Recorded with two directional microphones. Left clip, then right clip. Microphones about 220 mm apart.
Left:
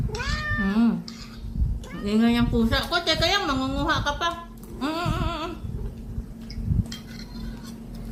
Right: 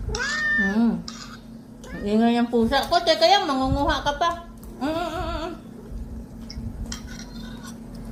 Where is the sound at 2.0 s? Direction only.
10° left (ahead or behind).